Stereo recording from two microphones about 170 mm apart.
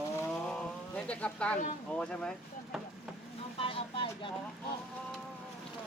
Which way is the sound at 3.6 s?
30° left (ahead or behind).